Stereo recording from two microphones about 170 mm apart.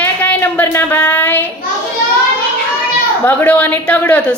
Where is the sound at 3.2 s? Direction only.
10° left (ahead or behind).